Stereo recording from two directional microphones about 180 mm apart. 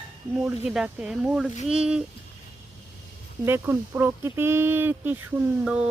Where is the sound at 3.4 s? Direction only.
15° right (ahead or behind).